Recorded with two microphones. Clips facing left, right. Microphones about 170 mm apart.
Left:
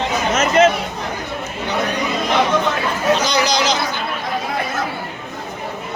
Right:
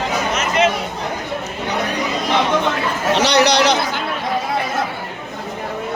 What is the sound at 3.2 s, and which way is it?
Speech, 70° right (ahead or behind).